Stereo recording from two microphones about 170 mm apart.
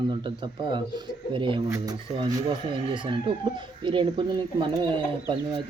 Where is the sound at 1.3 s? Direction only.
30° right (ahead or behind).